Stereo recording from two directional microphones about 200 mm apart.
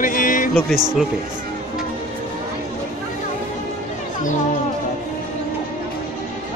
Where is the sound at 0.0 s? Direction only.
40° left (ahead or behind).